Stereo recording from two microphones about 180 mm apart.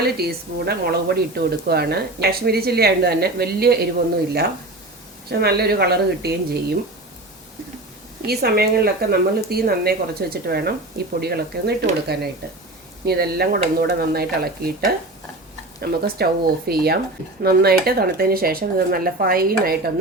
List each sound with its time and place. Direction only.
0.0 s speech: 60° right (ahead or behind)
5.3 s speech: 60° right (ahead or behind)
8.3 s speech: 60° right (ahead or behind)